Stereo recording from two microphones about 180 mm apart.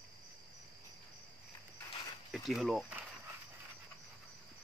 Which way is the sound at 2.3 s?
Centre (ahead or behind).